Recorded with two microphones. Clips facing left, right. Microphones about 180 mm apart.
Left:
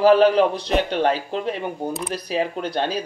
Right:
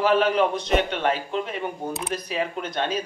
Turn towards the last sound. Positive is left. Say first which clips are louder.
# left 3 dB
turn(degrees=35)  # may be behind; listen again after turning